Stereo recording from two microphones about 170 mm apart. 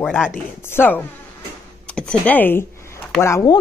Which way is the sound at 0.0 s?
5° left (ahead or behind).